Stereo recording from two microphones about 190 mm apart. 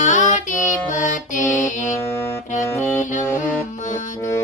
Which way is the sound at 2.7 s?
10° left (ahead or behind).